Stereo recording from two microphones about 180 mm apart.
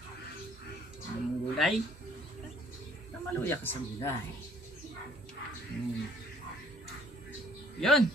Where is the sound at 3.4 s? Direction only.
10° left (ahead or behind).